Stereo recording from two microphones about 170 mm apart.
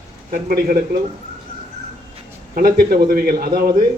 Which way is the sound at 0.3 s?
60° right (ahead or behind).